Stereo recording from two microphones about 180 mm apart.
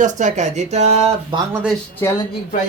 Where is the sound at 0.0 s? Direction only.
45° right (ahead or behind).